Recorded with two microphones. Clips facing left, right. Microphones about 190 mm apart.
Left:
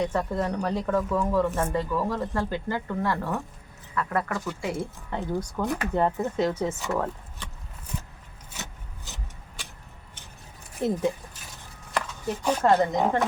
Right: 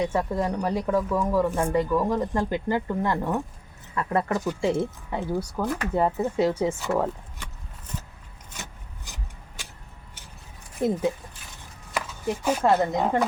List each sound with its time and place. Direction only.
0.0 s speech: 10° right (ahead or behind)
5.1 s speech: 10° right (ahead or behind)
11.9 s speech: 10° right (ahead or behind)